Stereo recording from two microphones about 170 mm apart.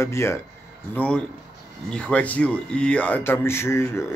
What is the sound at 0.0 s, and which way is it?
Speech, 15° left (ahead or behind).